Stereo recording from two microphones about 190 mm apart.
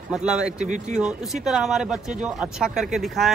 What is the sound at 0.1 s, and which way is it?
Speech, 5° right (ahead or behind).